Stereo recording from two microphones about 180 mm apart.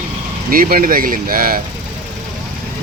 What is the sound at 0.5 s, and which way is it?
Speech, 50° right (ahead or behind).